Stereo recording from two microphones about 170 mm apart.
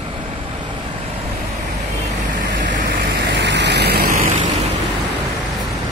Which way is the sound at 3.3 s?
85° right.